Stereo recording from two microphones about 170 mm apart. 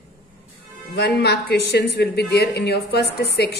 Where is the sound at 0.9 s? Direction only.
75° left (ahead or behind).